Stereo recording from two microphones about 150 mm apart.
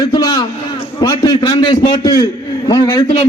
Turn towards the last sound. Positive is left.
turn(degrees=25)  # may be behind; listen again after turning